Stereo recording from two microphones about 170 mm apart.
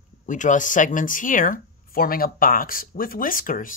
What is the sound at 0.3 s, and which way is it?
Speech, 50° left (ahead or behind).